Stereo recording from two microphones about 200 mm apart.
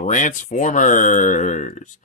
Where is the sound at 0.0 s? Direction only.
40° left (ahead or behind).